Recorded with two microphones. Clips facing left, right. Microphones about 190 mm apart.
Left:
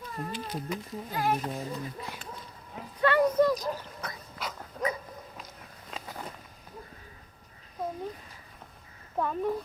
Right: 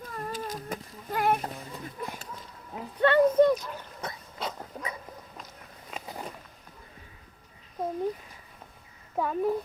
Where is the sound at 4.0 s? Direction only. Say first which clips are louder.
Right 3 dB; 25° right (ahead or behind).